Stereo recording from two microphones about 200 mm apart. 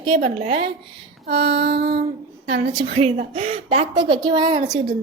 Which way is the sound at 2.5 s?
25° right (ahead or behind).